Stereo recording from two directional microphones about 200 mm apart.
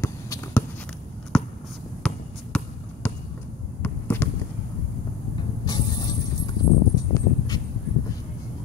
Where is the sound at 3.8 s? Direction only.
10° left (ahead or behind).